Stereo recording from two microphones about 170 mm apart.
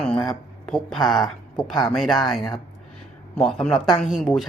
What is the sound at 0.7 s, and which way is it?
Speech, centre (ahead or behind).